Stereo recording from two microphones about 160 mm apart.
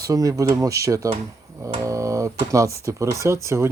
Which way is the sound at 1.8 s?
20° right (ahead or behind).